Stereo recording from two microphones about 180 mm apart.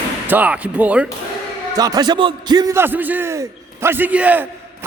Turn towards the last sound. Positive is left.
turn(degrees=-10)  # may be behind; listen again after turning